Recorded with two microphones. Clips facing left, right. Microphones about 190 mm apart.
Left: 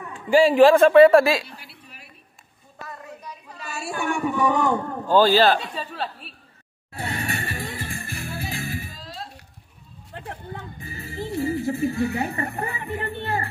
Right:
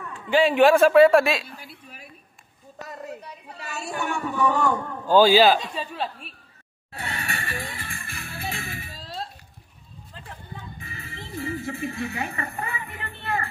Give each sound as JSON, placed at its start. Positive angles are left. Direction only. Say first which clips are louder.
{"t": 0.3, "sound": "a man's voice", "louder": "left 3 dB", "side_deg": 0}
{"t": 1.6, "sound": "a sound", "louder": "right 3 dB", "side_deg": -45}
{"t": 4.0, "sound": "music", "louder": "left 2 dB", "side_deg": 15}
{"t": 5.0, "sound": "a man's voice", "louder": "right 1 dB", "side_deg": 0}
{"t": 7.1, "sound": "music", "louder": "left 4 dB", "side_deg": 30}
{"t": 8.9, "sound": "a sound", "louder": "right 2 dB", "side_deg": -30}
{"t": 10.1, "sound": "a sound", "louder": "left 6 dB", "side_deg": 70}
{"t": 10.9, "sound": "music", "louder": "left 12 dB", "side_deg": 35}
{"t": 11.6, "sound": "speech", "louder": "left 7 dB", "side_deg": 35}